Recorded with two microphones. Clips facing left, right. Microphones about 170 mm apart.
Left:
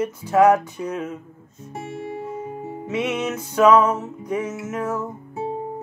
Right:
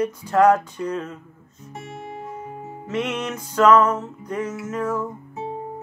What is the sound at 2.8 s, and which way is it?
Speech, 10° left (ahead or behind).